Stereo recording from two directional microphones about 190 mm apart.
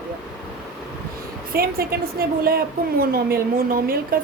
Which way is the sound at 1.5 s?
50° right (ahead or behind).